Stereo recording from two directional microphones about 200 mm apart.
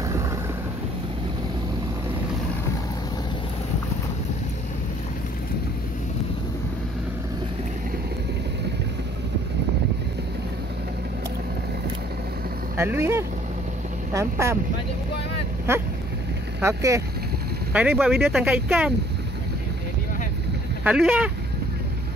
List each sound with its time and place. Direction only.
12.7 s speech: 10° right (ahead or behind)
16.6 s speech: 15° right (ahead or behind)
20.8 s speech: 5° right (ahead or behind)